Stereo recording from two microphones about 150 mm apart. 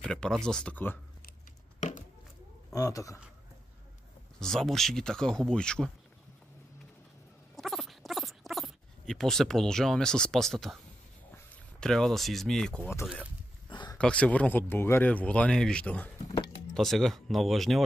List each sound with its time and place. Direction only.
0.0 s speech: 5° left (ahead or behind)
1.8 s a sound: 55° left (ahead or behind)
2.7 s a man's voice: 25° left (ahead or behind)
4.4 s speech: 5° left (ahead or behind)
7.5 s rodents: centre (ahead or behind)
11.8 s speech: 5° left (ahead or behind)
13.7 s a sound: 30° left (ahead or behind)
13.9 s speech: 10° left (ahead or behind)